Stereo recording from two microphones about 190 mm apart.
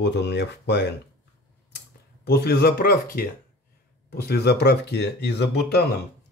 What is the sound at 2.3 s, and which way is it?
Speech, 55° left (ahead or behind).